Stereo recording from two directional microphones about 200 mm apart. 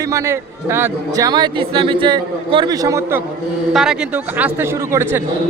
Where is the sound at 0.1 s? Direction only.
15° right (ahead or behind).